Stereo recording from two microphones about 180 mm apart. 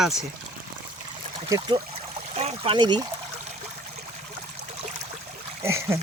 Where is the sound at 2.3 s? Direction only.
35° right (ahead or behind).